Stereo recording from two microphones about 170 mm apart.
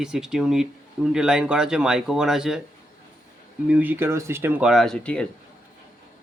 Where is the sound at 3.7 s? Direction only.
10° right (ahead or behind).